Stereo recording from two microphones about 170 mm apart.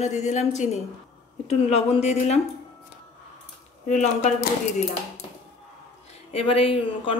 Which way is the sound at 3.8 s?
45° left (ahead or behind).